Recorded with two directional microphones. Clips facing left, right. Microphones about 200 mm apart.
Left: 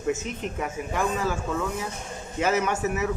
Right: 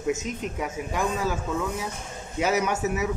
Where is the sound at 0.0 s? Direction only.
10° right (ahead or behind).